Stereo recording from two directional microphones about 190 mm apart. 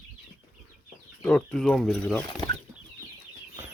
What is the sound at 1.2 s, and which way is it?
Speech, 5° left (ahead or behind).